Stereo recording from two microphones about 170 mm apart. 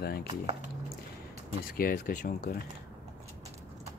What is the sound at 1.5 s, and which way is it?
Speech, 60° left (ahead or behind).